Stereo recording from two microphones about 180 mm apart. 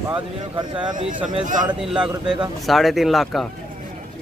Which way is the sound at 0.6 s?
25° right (ahead or behind).